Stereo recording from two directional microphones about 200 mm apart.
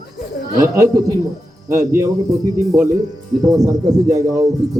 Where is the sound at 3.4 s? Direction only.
15° right (ahead or behind).